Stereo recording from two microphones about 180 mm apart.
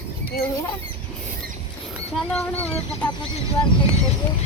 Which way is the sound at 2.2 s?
5° left (ahead or behind).